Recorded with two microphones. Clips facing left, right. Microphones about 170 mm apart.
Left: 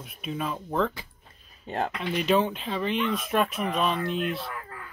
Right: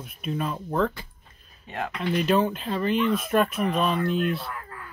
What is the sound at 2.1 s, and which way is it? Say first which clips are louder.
Speech: right 1 dB; centre (ahead or behind).